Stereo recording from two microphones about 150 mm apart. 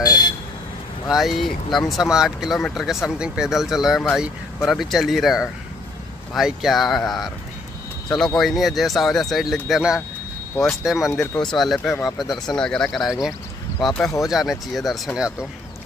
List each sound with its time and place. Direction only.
0.0 s vehicle: 30° left (ahead or behind)
1.0 s speech: centre (ahead or behind)
8.4 s speech: centre (ahead or behind)
11.1 s speech: 20° left (ahead or behind)
11.4 s speech: centre (ahead or behind)